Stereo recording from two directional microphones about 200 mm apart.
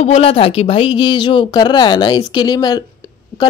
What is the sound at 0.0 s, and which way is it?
Speech, 30° left (ahead or behind).